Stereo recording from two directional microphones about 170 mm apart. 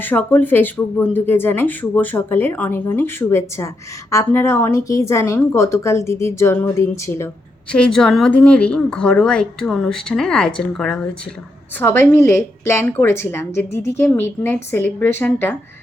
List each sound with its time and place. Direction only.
0.0 s a woman's voice: 10° left (ahead or behind)
7.7 s a woman's voice: 5° left (ahead or behind)